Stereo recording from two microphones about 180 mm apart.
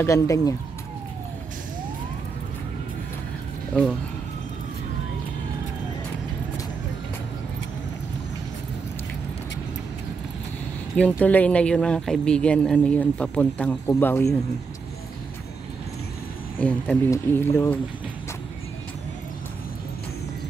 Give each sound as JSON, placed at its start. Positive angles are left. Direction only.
{"t": 0.0, "sound": "speech", "side_deg": 20}
{"t": 11.0, "sound": "speech", "side_deg": 10}
{"t": 16.5, "sound": "speech", "side_deg": 10}